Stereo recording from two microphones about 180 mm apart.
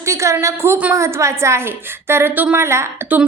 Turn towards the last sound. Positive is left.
turn(degrees=-15)  # may be behind; listen again after turning